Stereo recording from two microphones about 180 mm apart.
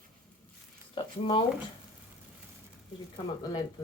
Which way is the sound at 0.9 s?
30° left (ahead or behind).